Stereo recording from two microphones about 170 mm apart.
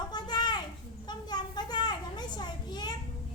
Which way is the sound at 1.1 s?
25° left (ahead or behind).